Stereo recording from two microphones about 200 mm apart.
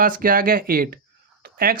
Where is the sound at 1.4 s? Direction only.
45° right (ahead or behind).